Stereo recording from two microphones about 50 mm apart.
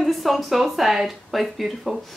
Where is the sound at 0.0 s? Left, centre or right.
Centre.